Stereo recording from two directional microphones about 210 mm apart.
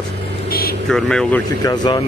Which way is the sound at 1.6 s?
20° left (ahead or behind).